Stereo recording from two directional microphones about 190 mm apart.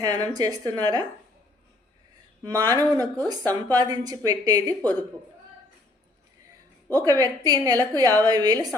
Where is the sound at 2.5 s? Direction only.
20° right (ahead or behind).